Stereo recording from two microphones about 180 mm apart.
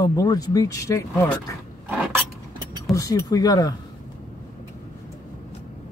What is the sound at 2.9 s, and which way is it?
Speech, 20° left (ahead or behind).